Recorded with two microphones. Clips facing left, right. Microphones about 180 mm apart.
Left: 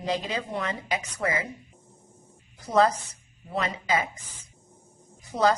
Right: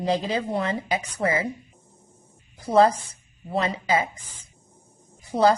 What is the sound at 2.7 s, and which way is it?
Speech, 30° right (ahead or behind).